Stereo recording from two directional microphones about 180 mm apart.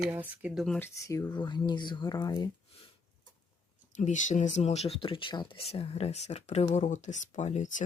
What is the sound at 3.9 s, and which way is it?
Speech, 45° left (ahead or behind).